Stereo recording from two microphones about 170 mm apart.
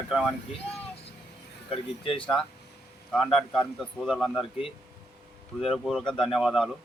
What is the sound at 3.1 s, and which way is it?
A man's voice, centre (ahead or behind).